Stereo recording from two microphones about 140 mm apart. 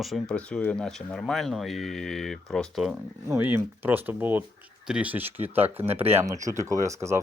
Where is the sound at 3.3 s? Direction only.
15° right (ahead or behind).